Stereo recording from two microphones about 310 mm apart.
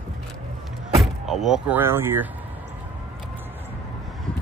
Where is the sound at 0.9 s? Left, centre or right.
Centre.